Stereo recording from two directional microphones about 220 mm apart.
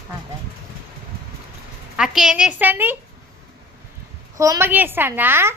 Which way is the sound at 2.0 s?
5° right (ahead or behind).